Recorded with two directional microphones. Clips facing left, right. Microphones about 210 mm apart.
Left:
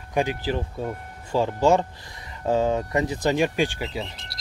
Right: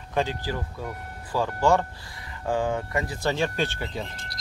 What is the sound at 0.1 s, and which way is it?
Speech, 15° left (ahead or behind).